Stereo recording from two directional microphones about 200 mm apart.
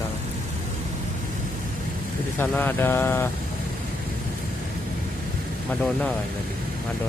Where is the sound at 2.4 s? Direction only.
10° left (ahead or behind).